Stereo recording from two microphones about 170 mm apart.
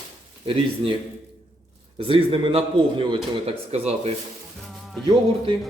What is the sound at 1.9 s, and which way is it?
A man's voice, 35° right (ahead or behind).